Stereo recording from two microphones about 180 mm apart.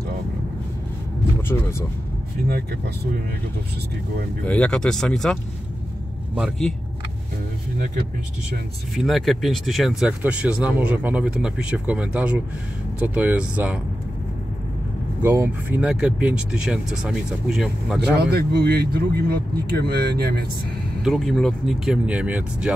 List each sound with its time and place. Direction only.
1.5 s speech: 15° left (ahead or behind)
4.5 s speech: 5° left (ahead or behind)
8.9 s speech: centre (ahead or behind)
15.2 s speech: 10° right (ahead or behind)
18.2 s speech: 60° right (ahead or behind)
21.0 s speech: centre (ahead or behind)